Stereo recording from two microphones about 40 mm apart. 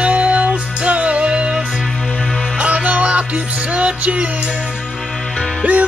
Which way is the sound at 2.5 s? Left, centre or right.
Right.